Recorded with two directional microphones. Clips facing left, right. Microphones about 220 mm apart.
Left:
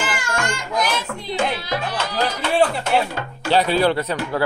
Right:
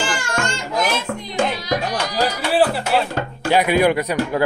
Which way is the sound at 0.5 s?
25° right (ahead or behind).